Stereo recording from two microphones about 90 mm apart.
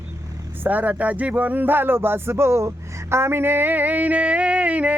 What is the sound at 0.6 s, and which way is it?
Speech, 20° right (ahead or behind).